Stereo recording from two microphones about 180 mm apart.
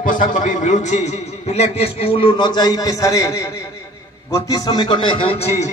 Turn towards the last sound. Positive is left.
turn(degrees=35)  # may be behind; listen again after turning